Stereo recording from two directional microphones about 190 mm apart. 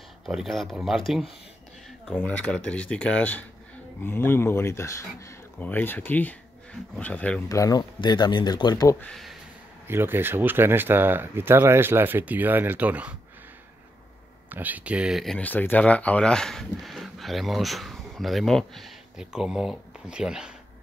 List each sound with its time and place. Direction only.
0.3 s speech: centre (ahead or behind)
7.4 s speech: 15° left (ahead or behind)
9.0 s speech: centre (ahead or behind)
9.8 s speech: 10° right (ahead or behind)
14.5 s speech: 10° right (ahead or behind)